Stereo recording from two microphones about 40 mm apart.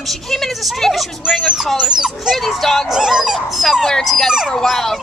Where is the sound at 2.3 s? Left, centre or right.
Centre.